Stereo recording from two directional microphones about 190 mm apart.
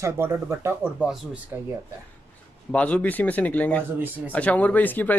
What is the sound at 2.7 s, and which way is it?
Speech, 5° left (ahead or behind).